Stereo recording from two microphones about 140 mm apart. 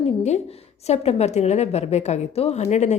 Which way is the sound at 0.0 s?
55° left (ahead or behind).